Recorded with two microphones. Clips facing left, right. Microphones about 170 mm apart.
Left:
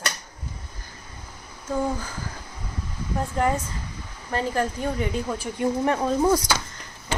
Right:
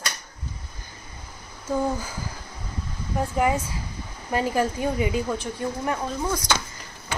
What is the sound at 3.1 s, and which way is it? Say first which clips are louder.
Speech: right 1 dB; 5° right (ahead or behind).